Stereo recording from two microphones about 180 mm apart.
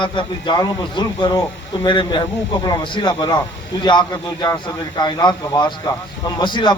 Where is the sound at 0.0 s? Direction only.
25° left (ahead or behind).